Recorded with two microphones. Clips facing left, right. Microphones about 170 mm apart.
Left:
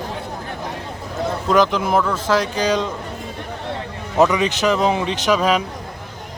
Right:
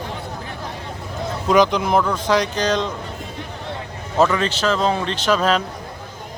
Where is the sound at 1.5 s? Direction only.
Centre (ahead or behind).